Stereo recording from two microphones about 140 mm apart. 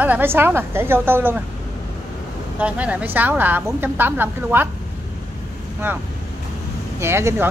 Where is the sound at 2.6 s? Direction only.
10° right (ahead or behind).